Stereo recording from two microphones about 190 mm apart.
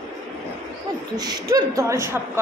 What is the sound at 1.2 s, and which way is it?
A woman's voice, 20° right (ahead or behind).